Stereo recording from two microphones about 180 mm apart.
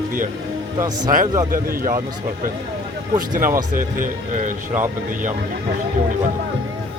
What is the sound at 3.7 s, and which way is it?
Speech, 50° right (ahead or behind).